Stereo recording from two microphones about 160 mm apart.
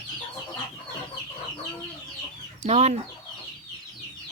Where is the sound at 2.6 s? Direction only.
40° right (ahead or behind).